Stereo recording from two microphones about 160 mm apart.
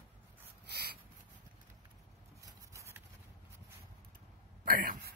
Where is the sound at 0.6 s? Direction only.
80° right.